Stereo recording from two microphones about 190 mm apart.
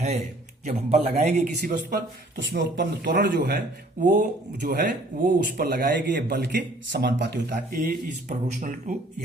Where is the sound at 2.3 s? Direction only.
65° right (ahead or behind).